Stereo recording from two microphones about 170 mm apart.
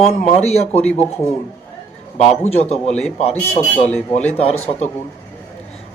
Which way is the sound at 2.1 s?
40° left (ahead or behind).